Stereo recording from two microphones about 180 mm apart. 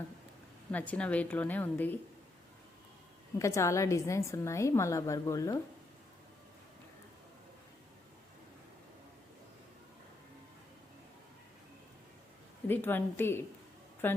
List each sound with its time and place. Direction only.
0.7 s a woman's voice: 10° left (ahead or behind)
3.3 s a woman's voice: 15° left (ahead or behind)
12.6 s a woman's voice: 10° left (ahead or behind)